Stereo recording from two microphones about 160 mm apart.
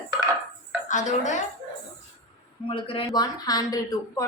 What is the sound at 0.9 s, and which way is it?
Speech, 50° left (ahead or behind).